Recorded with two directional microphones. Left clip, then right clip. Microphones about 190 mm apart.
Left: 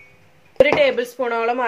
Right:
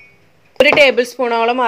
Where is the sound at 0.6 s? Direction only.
40° right (ahead or behind).